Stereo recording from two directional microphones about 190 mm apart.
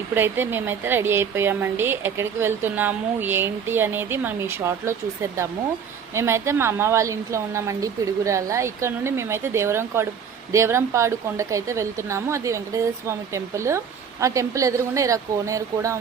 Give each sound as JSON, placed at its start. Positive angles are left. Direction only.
{"t": 0.1, "sound": "a woman's voice", "side_deg": -10}
{"t": 6.1, "sound": "a woman's voice", "side_deg": -15}